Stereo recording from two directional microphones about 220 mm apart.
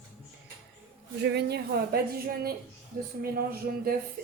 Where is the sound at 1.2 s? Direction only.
50° right (ahead or behind).